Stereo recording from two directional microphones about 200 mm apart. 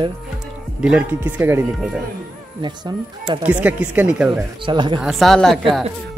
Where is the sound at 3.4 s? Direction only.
10° right (ahead or behind).